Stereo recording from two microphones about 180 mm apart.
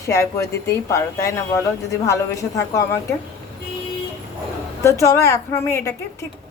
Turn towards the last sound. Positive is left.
turn(degrees=15)  # may be behind; listen again after turning